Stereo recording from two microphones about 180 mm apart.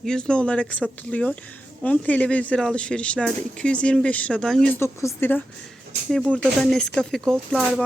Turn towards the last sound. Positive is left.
turn(degrees=0)  # may be behind; listen again after turning